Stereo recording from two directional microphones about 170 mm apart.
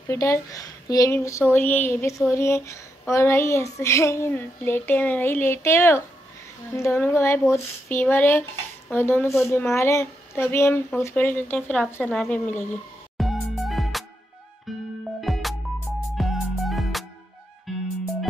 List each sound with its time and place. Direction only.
0.1 s speech: 20° left (ahead or behind)
13.2 s music: centre (ahead or behind)
15.1 s music: centre (ahead or behind)